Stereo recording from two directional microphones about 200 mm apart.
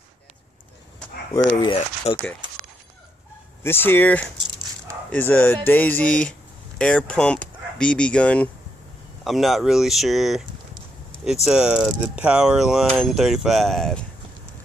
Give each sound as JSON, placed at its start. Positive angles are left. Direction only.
{"t": 1.6, "sound": "speech", "side_deg": 25}
{"t": 3.6, "sound": "speech", "side_deg": 10}
{"t": 11.4, "sound": "speech", "side_deg": -5}